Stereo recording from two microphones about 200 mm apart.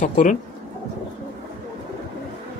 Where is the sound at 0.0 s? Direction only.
40° left (ahead or behind).